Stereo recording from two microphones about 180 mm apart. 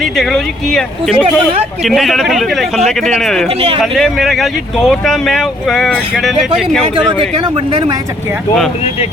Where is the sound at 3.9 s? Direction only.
Centre (ahead or behind).